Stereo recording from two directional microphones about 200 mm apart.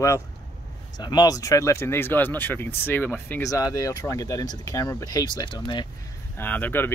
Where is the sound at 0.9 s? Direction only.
20° left (ahead or behind).